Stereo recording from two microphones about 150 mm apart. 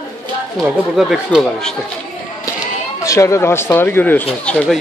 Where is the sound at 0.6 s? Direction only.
5° right (ahead or behind).